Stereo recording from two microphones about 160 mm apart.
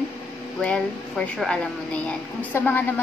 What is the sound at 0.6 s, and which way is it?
A woman's voice, 5° left (ahead or behind).